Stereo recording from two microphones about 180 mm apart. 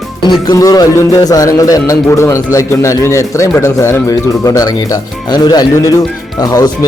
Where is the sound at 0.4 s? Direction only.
20° left (ahead or behind).